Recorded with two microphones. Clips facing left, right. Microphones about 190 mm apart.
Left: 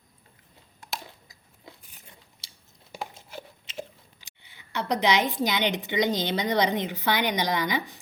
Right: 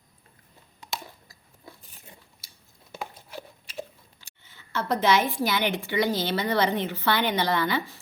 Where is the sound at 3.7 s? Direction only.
15° left (ahead or behind).